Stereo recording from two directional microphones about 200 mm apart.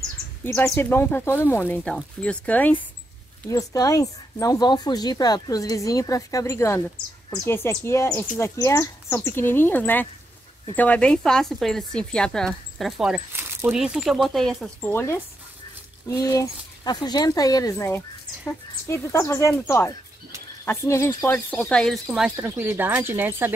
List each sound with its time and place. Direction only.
0.4 s speech: 10° left (ahead or behind); by 23.5 s 10° right (ahead or behind)